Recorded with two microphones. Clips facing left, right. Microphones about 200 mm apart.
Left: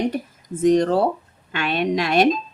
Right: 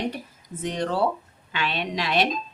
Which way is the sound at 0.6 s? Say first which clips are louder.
Left 8 dB; 45° left (ahead or behind).